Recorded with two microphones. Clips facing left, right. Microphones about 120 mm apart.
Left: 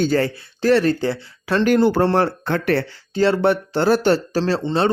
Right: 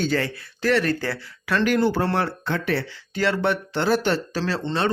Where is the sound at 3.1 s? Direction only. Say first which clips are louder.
Left 6 dB; 30° left (ahead or behind).